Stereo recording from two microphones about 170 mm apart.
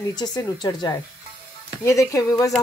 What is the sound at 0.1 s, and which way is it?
Speech, 25° left (ahead or behind).